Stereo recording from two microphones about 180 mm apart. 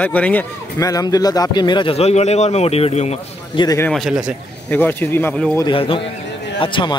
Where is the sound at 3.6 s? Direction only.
20° left (ahead or behind).